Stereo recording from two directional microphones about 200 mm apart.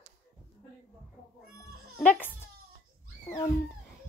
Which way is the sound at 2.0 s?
10° left (ahead or behind).